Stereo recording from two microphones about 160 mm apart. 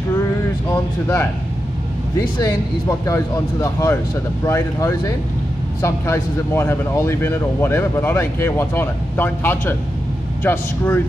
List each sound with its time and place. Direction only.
0.7 s speech: 15° left (ahead or behind)